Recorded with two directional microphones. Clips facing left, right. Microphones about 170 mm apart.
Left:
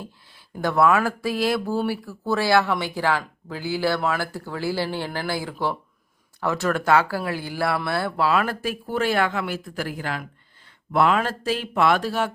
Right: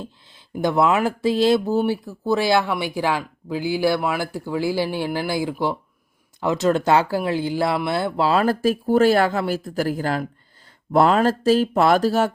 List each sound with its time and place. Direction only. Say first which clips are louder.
0.0 s speech: right 3 dB; 20° right (ahead or behind); by 12.3 s 40° right (ahead or behind)